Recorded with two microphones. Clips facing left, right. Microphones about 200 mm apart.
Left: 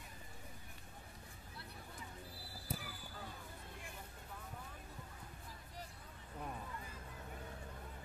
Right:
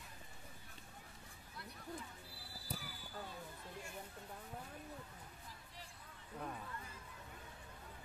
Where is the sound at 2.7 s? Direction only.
5° left (ahead or behind).